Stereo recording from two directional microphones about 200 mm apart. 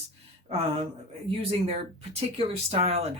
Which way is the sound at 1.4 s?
30° right (ahead or behind).